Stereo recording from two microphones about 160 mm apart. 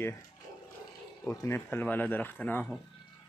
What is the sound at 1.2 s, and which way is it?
Speech, 15° left (ahead or behind).